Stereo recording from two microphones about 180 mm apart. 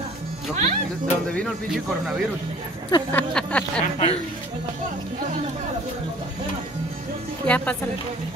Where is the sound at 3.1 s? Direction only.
5° left (ahead or behind).